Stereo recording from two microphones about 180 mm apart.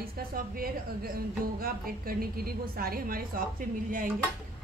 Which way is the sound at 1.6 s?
55° right (ahead or behind).